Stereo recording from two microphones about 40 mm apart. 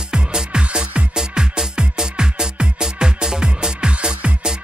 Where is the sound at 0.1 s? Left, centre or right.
Right.